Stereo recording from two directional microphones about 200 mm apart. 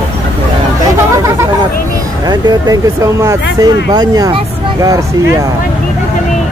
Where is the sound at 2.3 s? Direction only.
20° right (ahead or behind).